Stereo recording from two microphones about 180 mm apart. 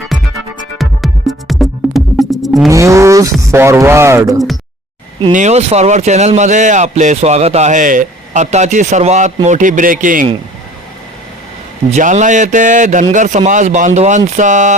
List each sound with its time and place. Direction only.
0.8 s music: centre (ahead or behind)
2.6 s speech: 15° right (ahead or behind)
5.3 s a man's voice: 40° right (ahead or behind)
11.9 s a man's voice: 40° right (ahead or behind)